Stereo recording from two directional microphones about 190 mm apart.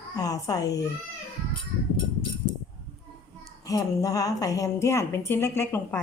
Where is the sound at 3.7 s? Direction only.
20° left (ahead or behind).